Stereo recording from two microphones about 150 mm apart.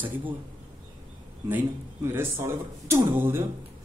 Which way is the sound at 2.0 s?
15° right (ahead or behind).